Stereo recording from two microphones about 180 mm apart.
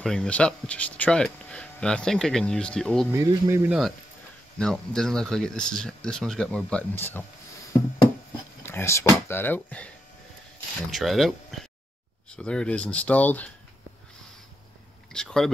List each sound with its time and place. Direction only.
0.0 s speech: 5° left (ahead or behind)
3.1 s speech: 15° right (ahead or behind)
4.6 s speech: 5° left (ahead or behind)
8.6 s speech: 15° left (ahead or behind)
15.1 s speech: 5° left (ahead or behind)